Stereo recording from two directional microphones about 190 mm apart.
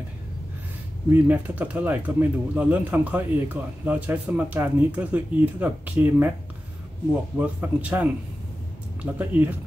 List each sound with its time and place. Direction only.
1.1 s speech: 10° right (ahead or behind)
7.3 s speech: 10° right (ahead or behind)